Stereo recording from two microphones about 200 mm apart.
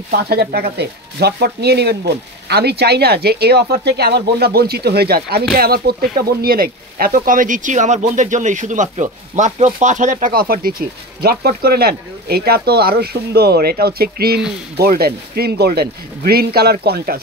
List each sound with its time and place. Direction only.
0.1 s speech: 50° right (ahead or behind)